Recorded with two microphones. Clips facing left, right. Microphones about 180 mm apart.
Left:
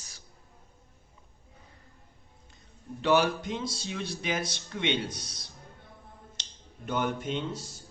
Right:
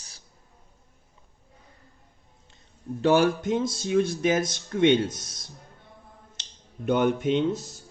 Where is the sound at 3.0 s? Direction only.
45° right (ahead or behind).